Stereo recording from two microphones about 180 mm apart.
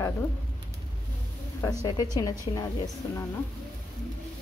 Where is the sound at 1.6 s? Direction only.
20° left (ahead or behind).